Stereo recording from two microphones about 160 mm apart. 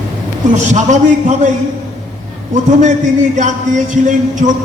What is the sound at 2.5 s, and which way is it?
Speech, 50° right (ahead or behind).